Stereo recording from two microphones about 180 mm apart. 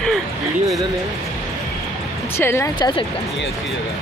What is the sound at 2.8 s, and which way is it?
Speech, 25° left (ahead or behind).